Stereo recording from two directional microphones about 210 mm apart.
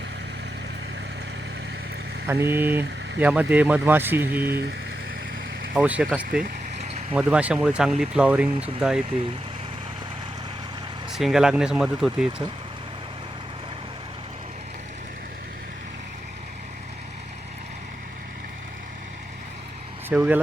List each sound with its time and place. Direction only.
2.2 s speech: 10° right (ahead or behind)
5.7 s speech: 5° right (ahead or behind)
6.4 s vehicle: 30° right (ahead or behind)
7.1 s speech: 5° right (ahead or behind)
11.1 s speech: centre (ahead or behind)
20.1 s speech: 5° right (ahead or behind)